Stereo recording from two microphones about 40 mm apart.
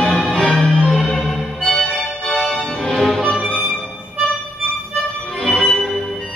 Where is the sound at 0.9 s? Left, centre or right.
Centre.